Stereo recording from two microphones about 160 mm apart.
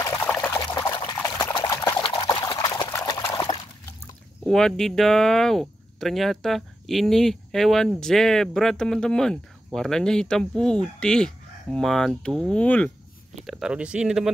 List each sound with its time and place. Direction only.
0.0 s pour: 15° left (ahead or behind)
2.0 s liquid: 30° left (ahead or behind)
4.5 s speech: 5° left (ahead or behind)